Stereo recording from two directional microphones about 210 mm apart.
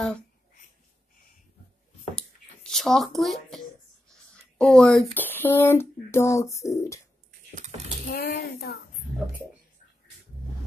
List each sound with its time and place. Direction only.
2.1 s a sound: centre (ahead or behind)
5.1 s speech: 10° left (ahead or behind)
7.5 s speech: 35° right (ahead or behind)
8.1 s speech: 50° left (ahead or behind)